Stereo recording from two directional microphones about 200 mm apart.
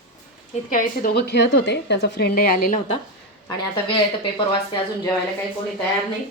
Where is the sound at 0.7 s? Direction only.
45° left (ahead or behind).